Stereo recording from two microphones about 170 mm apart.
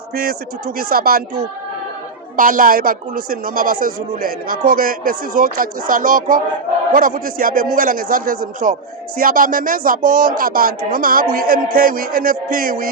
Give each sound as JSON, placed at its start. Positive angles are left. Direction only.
{"t": 0.1, "sound": "a man's voice", "side_deg": -65}
{"t": 2.3, "sound": "a man's voice", "side_deg": -55}